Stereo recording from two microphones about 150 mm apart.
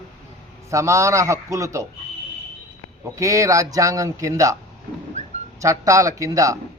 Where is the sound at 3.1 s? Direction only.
20° right (ahead or behind).